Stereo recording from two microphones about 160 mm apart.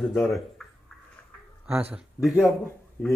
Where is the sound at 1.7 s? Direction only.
10° right (ahead or behind).